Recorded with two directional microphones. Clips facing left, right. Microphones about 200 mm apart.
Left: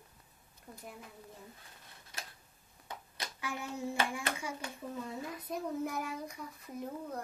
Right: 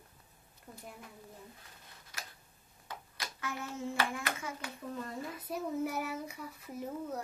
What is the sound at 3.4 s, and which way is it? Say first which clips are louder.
Hands: even; 15° left (ahead or behind).